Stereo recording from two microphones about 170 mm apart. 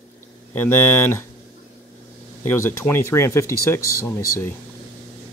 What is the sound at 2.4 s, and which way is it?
Speech, 15° left (ahead or behind).